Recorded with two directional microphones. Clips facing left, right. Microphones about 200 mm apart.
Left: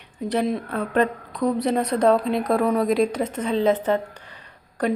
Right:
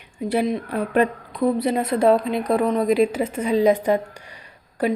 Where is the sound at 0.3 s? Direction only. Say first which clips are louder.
Right 1 dB; 5° right (ahead or behind).